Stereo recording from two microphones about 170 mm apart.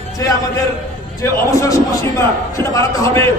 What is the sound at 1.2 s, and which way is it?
A man's voice, 20° left (ahead or behind).